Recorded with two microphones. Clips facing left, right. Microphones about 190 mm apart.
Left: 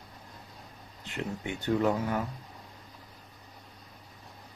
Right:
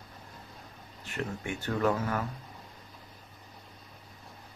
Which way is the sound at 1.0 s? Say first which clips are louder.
Even; 15° left (ahead or behind).